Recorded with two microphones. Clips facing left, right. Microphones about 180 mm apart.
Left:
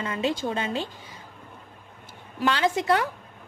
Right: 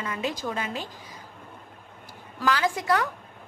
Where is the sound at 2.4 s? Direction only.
25° left (ahead or behind).